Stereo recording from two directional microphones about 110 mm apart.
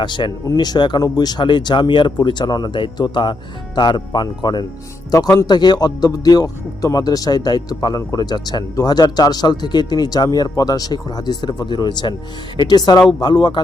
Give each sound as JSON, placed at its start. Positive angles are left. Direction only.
{"t": 0.0, "sound": "speech", "side_deg": 45}
{"t": 13.0, "sound": "speech", "side_deg": 0}
{"t": 13.2, "sound": "speech", "side_deg": 45}